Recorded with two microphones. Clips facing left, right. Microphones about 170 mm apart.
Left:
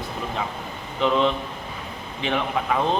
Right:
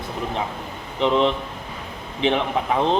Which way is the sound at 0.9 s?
20° right (ahead or behind).